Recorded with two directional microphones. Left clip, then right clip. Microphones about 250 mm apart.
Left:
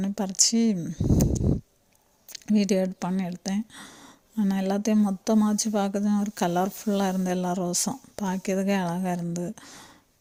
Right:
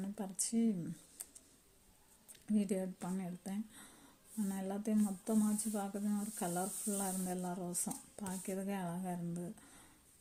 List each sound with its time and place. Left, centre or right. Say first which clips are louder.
0.0 s speech: left 19 dB; left
2.3 s speech: left 14 dB; left